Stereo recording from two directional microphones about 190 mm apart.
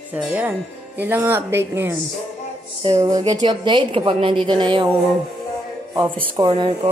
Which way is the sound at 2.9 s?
20° right (ahead or behind).